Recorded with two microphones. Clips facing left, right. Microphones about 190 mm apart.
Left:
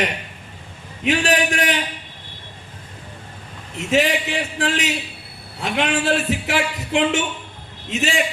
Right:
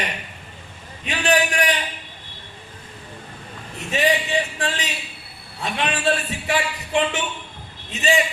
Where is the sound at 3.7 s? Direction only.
90° left.